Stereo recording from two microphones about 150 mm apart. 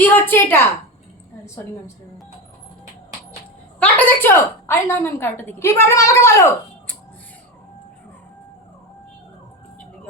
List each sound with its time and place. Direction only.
0.0 s a woman's voice: 15° left (ahead or behind)
3.8 s a woman's voice: 10° left (ahead or behind)